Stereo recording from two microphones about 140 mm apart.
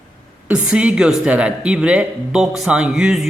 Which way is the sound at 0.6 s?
5° right (ahead or behind).